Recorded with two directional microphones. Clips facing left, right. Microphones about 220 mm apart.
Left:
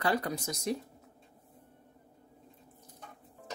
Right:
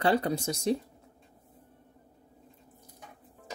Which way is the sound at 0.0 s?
25° right (ahead or behind).